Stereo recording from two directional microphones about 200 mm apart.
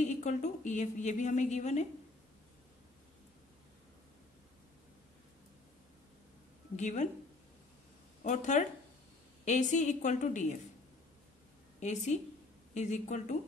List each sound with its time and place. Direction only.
0.0 s a woman's voice: 40° left (ahead or behind)
6.8 s a woman's voice: 35° left (ahead or behind)
8.2 s a woman's voice: 35° left (ahead or behind)
11.8 s a woman's voice: 35° left (ahead or behind)